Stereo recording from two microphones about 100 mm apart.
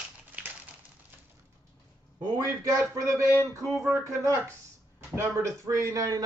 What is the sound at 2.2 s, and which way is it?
A man's voice, 35° right (ahead or behind).